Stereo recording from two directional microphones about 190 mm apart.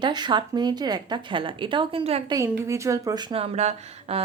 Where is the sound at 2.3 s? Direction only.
15° right (ahead or behind); by 4.2 s 35° right (ahead or behind).